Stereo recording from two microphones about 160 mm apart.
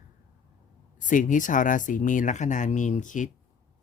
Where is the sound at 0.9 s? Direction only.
55° left (ahead or behind).